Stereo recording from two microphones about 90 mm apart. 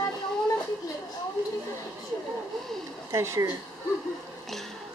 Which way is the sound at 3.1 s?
35° right (ahead or behind).